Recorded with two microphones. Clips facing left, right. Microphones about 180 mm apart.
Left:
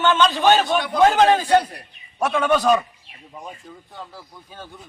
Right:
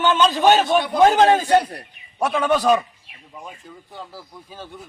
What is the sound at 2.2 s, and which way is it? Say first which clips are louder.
Speech: even; 10° right (ahead or behind).